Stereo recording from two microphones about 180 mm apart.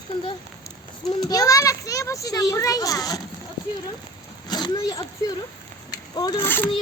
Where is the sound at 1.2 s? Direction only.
20° left (ahead or behind).